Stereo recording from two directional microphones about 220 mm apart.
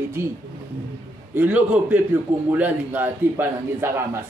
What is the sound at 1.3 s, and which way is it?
A man's voice, 10° right (ahead or behind).